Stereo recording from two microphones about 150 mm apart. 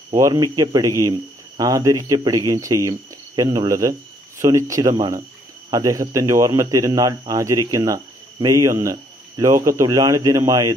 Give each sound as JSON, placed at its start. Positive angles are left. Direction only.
{"t": 0.1, "sound": "speech", "side_deg": -25}